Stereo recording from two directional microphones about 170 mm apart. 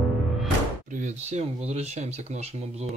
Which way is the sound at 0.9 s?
45° right (ahead or behind).